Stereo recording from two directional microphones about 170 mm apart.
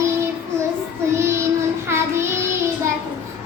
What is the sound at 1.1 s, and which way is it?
Child singing, 15° right (ahead or behind).